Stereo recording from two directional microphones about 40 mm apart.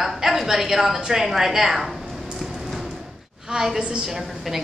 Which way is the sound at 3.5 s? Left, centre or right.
Centre.